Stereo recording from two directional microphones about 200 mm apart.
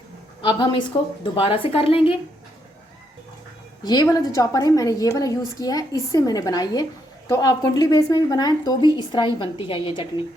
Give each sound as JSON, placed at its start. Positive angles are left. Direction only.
{"t": 0.4, "sound": "a woman's voice", "side_deg": 25}
{"t": 3.8, "sound": "a woman's voice", "side_deg": 20}